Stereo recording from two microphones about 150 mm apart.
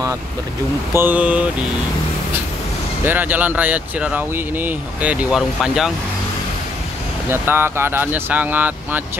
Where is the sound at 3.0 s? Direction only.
10° right (ahead or behind).